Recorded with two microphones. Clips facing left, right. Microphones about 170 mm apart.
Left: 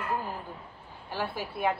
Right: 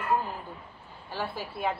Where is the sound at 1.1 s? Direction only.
10° left (ahead or behind).